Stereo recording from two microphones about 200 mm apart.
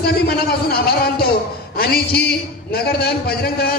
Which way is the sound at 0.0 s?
55° left (ahead or behind).